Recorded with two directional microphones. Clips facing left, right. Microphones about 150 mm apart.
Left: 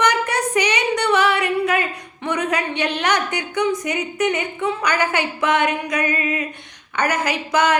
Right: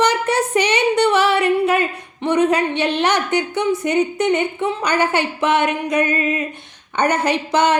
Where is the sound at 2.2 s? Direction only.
30° right (ahead or behind).